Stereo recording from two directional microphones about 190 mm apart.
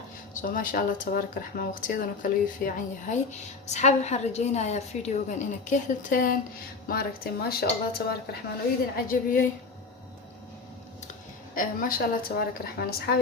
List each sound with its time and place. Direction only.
0.3 s speech: 45° left (ahead or behind)
3.7 s a woman's voice: 35° left (ahead or behind)
11.5 s speech: 45° left (ahead or behind)